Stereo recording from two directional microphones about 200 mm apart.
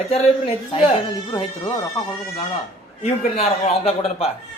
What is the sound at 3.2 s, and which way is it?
Speech, 35° left (ahead or behind).